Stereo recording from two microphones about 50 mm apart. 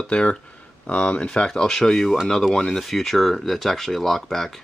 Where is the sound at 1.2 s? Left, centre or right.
Centre.